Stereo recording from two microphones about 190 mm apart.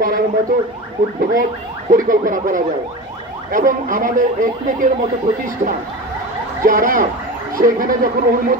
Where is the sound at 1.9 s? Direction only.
45° right (ahead or behind).